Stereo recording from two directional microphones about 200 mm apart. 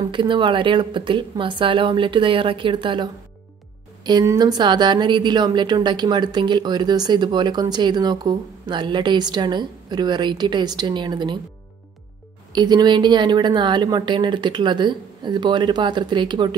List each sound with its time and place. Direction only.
0.0 s a woman's voice: 25° right (ahead or behind)
12.5 s a woman's voice: 20° right (ahead or behind)